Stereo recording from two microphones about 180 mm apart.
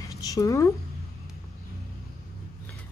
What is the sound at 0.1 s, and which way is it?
Speech, 20° left (ahead or behind).